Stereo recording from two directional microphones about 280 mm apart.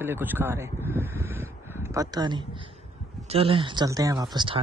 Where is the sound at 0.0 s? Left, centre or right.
Centre.